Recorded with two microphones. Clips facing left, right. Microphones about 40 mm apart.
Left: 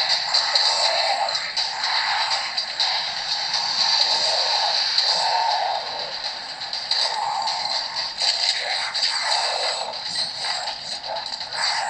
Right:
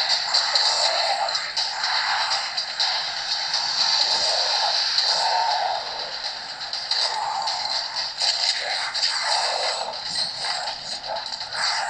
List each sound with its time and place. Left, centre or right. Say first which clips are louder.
0.0 s music: left 1 dB; left
1.3 s music: left 1 dB; left
6.9 s music: left 1 dB; left
7.2 s a sound: left 2 dB; centre
7.4 s music: left 1 dB; left
11.5 s music: left 1 dB; centre